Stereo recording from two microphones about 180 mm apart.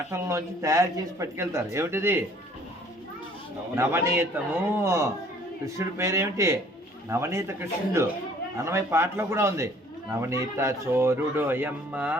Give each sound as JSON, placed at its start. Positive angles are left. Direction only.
{"t": 0.1, "sound": "speech", "side_deg": -15}
{"t": 3.8, "sound": "speech", "side_deg": -15}